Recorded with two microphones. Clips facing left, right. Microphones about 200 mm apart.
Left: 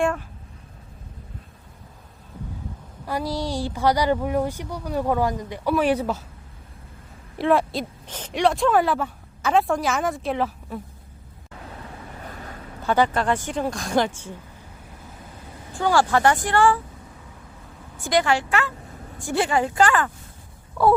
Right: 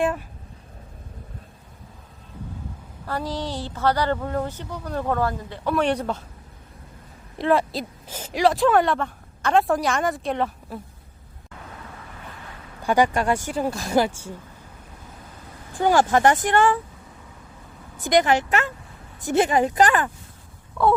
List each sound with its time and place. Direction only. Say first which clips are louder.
3.1 s speech: left 2 dB; 10° left (ahead or behind)
7.3 s speech: left 1 dB; centre (ahead or behind)
12.2 s a sound: left 5 dB; 40° left (ahead or behind)
12.8 s speech: right 1 dB; 10° right (ahead or behind)
15.7 s speech: right 2 dB; 20° right (ahead or behind)
17.9 s speech: right 2 dB; 20° right (ahead or behind)